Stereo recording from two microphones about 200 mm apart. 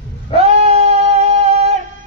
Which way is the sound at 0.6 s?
30° right (ahead or behind).